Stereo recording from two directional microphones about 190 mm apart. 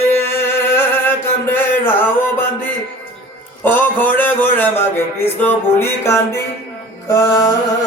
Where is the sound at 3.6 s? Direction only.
10° left (ahead or behind).